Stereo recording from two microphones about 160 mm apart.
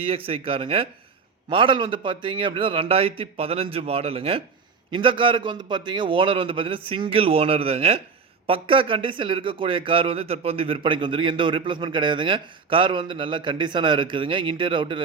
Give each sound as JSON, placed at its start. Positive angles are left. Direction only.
{"t": 0.0, "sound": "speech", "side_deg": -35}